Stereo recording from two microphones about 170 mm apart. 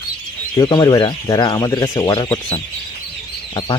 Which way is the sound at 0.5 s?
25° left (ahead or behind).